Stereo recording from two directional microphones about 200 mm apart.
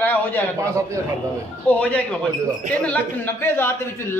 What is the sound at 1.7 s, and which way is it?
A man's voice, 5° left (ahead or behind).